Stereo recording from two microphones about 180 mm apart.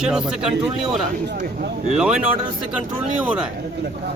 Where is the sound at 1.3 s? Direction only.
50° right (ahead or behind).